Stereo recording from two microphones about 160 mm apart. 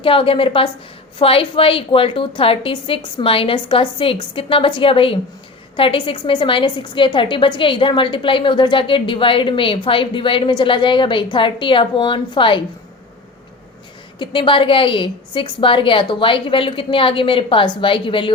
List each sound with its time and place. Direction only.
0.0 s a woman's voice: 35° left (ahead or behind)
14.2 s a woman's voice: 30° left (ahead or behind)